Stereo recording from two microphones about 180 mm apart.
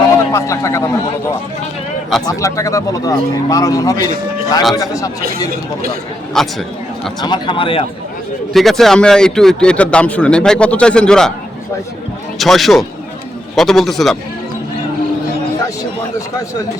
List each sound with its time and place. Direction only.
0.1 s a man's voice: 15° left (ahead or behind)
2.2 s speech: 20° left (ahead or behind)
6.4 s speech: centre (ahead or behind)
7.2 s speech: 25° left (ahead or behind)
8.5 s speech: centre (ahead or behind)
12.4 s speech: centre (ahead or behind)